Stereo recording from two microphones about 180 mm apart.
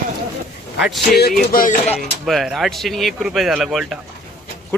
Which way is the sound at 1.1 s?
60° left (ahead or behind).